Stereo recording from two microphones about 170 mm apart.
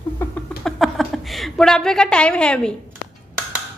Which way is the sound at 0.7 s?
Centre (ahead or behind).